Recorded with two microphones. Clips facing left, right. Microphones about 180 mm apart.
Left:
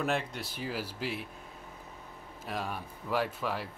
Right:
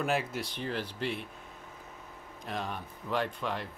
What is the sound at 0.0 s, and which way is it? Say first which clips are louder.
Speech: right 1 dB; 5° right (ahead or behind).